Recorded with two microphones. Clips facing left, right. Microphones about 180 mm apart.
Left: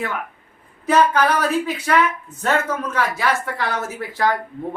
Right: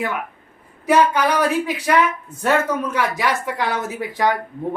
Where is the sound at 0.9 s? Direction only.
10° right (ahead or behind).